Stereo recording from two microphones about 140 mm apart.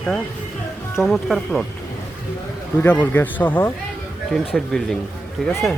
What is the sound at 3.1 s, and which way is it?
Speech, 10° left (ahead or behind).